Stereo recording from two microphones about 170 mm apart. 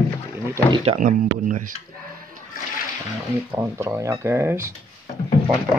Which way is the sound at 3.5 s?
15° right (ahead or behind).